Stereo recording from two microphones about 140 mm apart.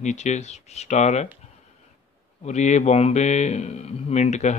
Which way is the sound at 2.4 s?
55° left (ahead or behind).